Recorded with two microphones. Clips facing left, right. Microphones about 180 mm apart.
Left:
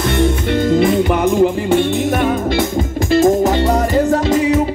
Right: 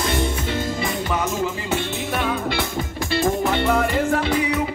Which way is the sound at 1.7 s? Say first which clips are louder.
Left 10 dB; 45° left (ahead or behind).